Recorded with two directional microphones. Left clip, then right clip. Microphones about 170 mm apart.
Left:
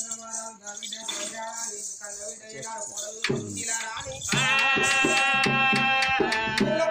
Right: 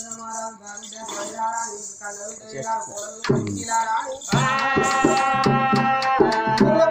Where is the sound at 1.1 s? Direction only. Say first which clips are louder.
Right 10 dB; 5° left (ahead or behind).